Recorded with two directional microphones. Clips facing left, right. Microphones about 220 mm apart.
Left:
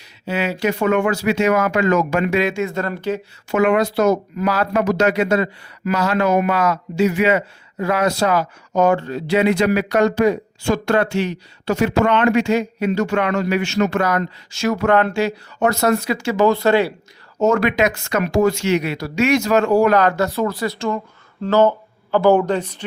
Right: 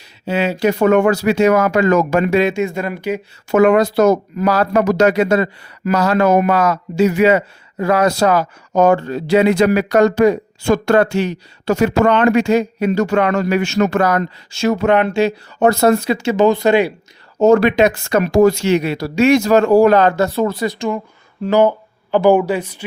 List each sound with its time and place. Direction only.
0.3 s speech: 25° right (ahead or behind)
0.5 s speech: 40° right (ahead or behind)
2.5 s speech: 15° right (ahead or behind)
3.5 s speech: 40° right (ahead or behind); by 16.9 s 15° right (ahead or behind)
17.4 s speech: 30° right (ahead or behind); by 22.8 s 10° right (ahead or behind)